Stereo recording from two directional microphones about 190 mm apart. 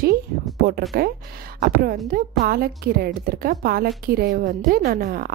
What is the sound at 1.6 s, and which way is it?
A woman's voice, 55° right (ahead or behind).